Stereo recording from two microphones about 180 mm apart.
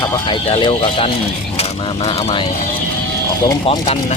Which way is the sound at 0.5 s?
30° left (ahead or behind).